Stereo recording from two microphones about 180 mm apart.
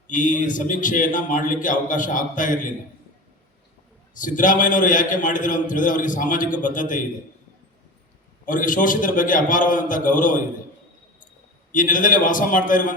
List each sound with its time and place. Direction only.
0.1 s a man's voice: 45° left (ahead or behind)
4.1 s a man's voice: 45° left (ahead or behind)
8.4 s a man's voice: 45° left (ahead or behind)
11.7 s a man's voice: 45° left (ahead or behind)